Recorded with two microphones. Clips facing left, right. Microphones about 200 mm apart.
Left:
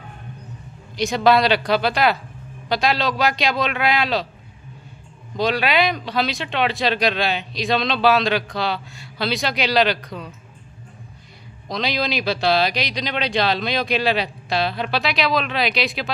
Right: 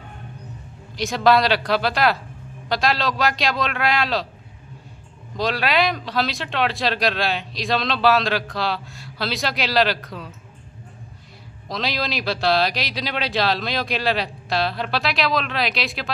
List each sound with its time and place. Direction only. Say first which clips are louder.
0.9 s speech: left 1 dB; centre (ahead or behind)
5.4 s speech: left 2 dB; centre (ahead or behind)
11.7 s speech: left 3 dB; centre (ahead or behind)